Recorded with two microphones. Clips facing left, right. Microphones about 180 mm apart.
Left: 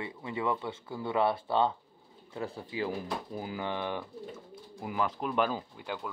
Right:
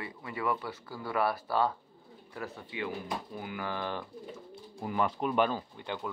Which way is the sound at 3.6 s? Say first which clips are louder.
Left 1 dB; 20° left (ahead or behind).